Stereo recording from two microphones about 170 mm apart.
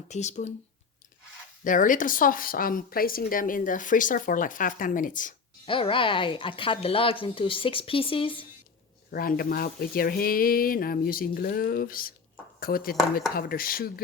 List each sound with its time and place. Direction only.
0.1 s speech: 45° left (ahead or behind)
1.6 s speech: 50° left (ahead or behind)
5.6 s speech: 30° left (ahead or behind)
9.1 s speech: 60° left (ahead or behind)